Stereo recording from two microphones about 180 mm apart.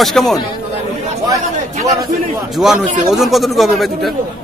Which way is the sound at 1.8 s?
20° right (ahead or behind).